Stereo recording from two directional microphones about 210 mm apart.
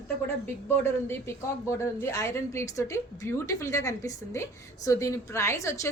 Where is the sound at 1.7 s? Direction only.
10° left (ahead or behind).